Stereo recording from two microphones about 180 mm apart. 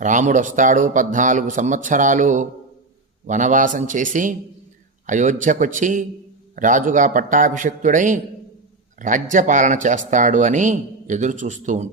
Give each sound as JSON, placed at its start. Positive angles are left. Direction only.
{"t": 0.0, "sound": "a man's voice", "side_deg": -45}